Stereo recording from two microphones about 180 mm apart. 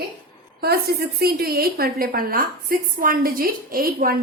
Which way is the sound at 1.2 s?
55° right (ahead or behind).